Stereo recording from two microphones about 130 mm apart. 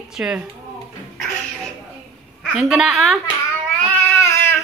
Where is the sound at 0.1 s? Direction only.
5° right (ahead or behind).